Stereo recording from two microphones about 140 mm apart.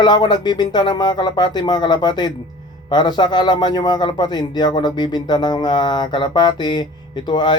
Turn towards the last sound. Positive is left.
turn(degrees=35)  # may be behind; listen again after turning